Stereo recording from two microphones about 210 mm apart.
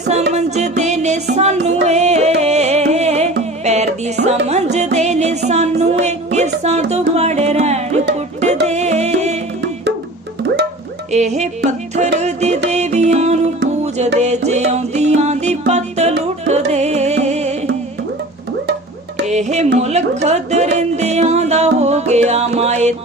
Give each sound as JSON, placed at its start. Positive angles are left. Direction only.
{"t": 0.1, "sound": "music", "side_deg": -30}
{"t": 11.1, "sound": "music", "side_deg": -35}
{"t": 19.3, "sound": "music", "side_deg": -35}